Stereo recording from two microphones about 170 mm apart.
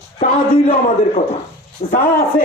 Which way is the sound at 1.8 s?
40° left (ahead or behind).